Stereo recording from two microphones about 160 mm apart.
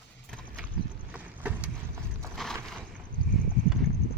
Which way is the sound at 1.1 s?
10° right (ahead or behind).